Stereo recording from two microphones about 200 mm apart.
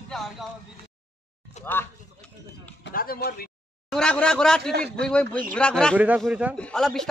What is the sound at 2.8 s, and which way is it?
Speech, 45° left (ahead or behind).